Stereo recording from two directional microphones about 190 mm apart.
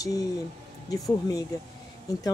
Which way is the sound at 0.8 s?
20° left (ahead or behind).